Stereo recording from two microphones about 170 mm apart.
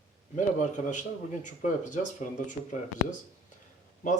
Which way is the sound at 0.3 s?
45° left (ahead or behind).